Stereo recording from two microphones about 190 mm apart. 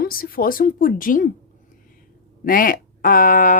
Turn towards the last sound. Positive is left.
turn(degrees=45)  # may be behind; listen again after turning